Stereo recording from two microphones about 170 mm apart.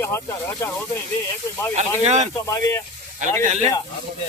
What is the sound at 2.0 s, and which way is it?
Speech, 40° right (ahead or behind).